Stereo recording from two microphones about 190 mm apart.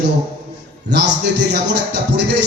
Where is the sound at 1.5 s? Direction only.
65° right (ahead or behind).